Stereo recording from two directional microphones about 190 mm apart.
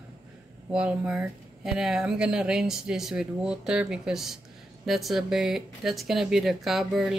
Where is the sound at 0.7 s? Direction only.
5° right (ahead or behind).